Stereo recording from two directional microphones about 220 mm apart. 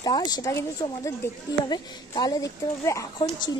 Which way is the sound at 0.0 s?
20° left (ahead or behind).